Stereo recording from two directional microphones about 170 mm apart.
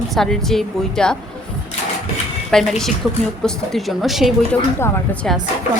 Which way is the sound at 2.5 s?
Centre (ahead or behind).